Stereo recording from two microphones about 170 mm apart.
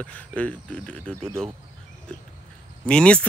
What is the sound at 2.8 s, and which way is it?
Speech, 5° left (ahead or behind).